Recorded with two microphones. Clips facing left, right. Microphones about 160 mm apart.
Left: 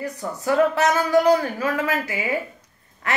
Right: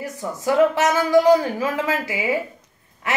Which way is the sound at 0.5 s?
20° right (ahead or behind).